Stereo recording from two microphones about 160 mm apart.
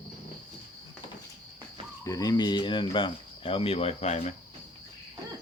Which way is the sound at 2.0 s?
20° left (ahead or behind).